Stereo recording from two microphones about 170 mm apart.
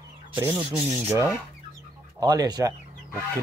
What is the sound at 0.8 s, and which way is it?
Speech, 15° right (ahead or behind).